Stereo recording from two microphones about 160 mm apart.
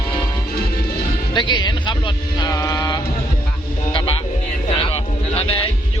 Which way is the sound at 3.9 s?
30° left (ahead or behind).